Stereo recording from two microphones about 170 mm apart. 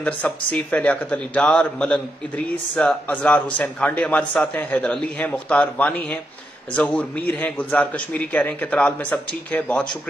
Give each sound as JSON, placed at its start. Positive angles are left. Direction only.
{"t": 0.0, "sound": "a man's voice", "side_deg": 5}